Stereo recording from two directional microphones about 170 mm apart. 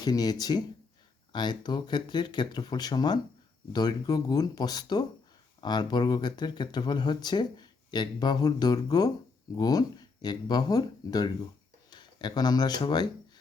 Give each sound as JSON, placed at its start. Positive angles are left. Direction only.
{"t": 0.0, "sound": "speech", "side_deg": 25}